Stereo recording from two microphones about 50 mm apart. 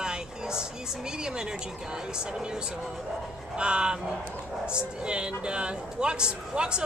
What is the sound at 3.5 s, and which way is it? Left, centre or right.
Speech, right.